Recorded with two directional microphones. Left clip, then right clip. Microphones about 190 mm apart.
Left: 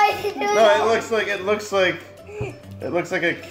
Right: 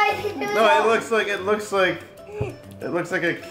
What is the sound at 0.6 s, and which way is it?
Speech, 15° left (ahead or behind).